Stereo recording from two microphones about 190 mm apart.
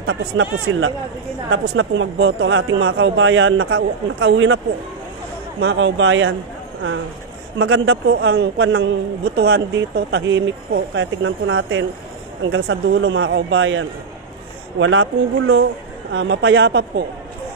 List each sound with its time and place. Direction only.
0.0 s speech: 90° right
5.6 s a man's voice: 65° right (ahead or behind); by 6.3 s 90° right
7.5 s a man's voice: 90° right
9.2 s speech: 55° right (ahead or behind); by 15.6 s 90° right
16.1 s speech: 75° right (ahead or behind)